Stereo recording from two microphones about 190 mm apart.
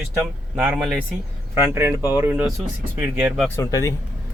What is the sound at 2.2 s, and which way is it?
Speech, 10° right (ahead or behind).